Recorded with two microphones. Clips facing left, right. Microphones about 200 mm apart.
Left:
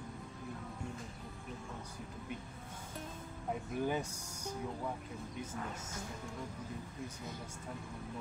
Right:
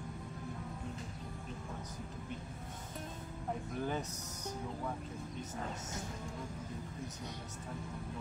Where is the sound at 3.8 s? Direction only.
10° left (ahead or behind).